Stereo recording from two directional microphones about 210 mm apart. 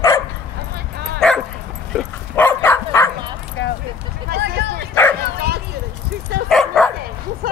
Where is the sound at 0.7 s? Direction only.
50° right (ahead or behind).